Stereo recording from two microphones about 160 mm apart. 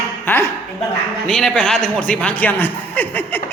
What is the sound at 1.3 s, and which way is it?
A man's voice, 5° left (ahead or behind).